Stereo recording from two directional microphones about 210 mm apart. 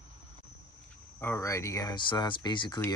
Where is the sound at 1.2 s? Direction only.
10° left (ahead or behind).